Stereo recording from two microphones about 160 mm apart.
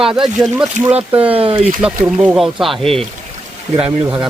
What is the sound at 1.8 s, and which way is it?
Speech, 10° right (ahead or behind).